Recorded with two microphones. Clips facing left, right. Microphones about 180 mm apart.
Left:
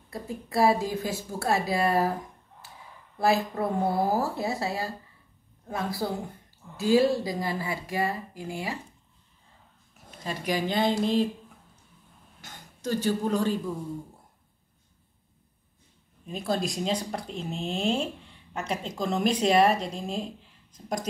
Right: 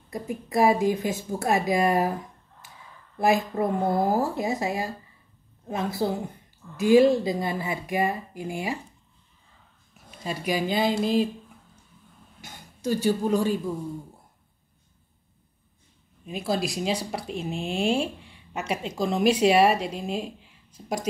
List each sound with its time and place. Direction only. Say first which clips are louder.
0.1 s speech: right 3 dB; 15° right (ahead or behind)
3.2 s speech: right 2 dB; 15° right (ahead or behind)
3.8 s speech: right 1 dB; 10° left (ahead or behind)
4.1 s a woman's voice: right 2 dB; 15° right (ahead or behind)
10.2 s speech: right 2 dB; 10° right (ahead or behind)
12.4 s speech: right 2 dB; 10° right (ahead or behind)
16.3 s speech: right 2 dB; 10° right (ahead or behind)